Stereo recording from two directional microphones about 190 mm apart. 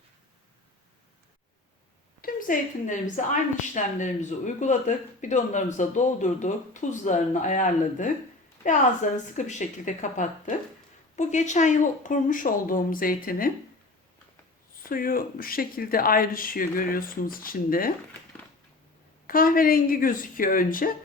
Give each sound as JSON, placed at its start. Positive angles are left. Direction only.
{"t": 2.2, "sound": "a woman's voice", "side_deg": 45}
{"t": 9.3, "sound": "speech", "side_deg": 40}
{"t": 14.8, "sound": "speech", "side_deg": 50}
{"t": 19.3, "sound": "speech", "side_deg": 50}